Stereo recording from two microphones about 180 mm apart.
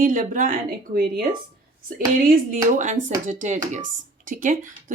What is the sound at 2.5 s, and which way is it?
Speech, 40° right (ahead or behind).